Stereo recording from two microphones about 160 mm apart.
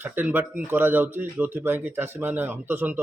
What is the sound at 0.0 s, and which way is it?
A man's voice, 10° right (ahead or behind).